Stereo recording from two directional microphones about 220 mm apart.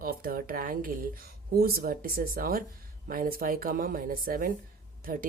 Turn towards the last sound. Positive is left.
turn(degrees=-40)  # may be behind; listen again after turning